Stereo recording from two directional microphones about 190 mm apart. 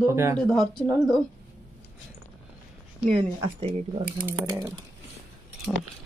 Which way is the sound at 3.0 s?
30° right (ahead or behind).